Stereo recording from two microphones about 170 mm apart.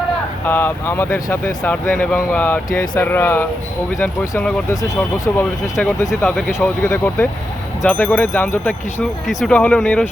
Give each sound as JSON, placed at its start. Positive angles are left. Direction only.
{"t": 0.4, "sound": "speech", "side_deg": 10}
{"t": 6.1, "sound": "speech", "side_deg": 0}